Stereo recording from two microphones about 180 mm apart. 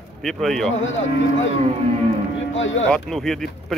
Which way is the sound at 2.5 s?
90° left.